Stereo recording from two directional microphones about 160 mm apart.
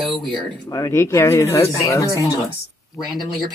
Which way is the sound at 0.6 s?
20° left (ahead or behind).